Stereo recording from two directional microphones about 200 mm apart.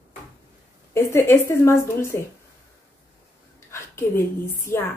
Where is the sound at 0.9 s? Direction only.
10° left (ahead or behind).